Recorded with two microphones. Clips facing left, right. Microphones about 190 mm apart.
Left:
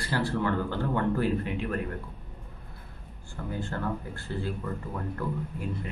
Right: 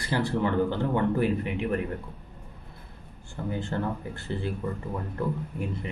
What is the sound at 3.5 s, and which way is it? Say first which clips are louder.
Speech: right 2 dB; 20° right (ahead or behind).